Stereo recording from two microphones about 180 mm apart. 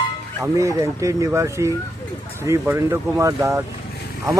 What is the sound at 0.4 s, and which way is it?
Speech, 15° right (ahead or behind).